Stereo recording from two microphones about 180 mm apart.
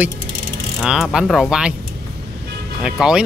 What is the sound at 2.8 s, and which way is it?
Speech, 5° right (ahead or behind).